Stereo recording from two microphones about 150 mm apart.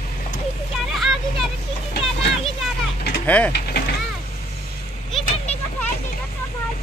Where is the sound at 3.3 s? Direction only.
10° left (ahead or behind).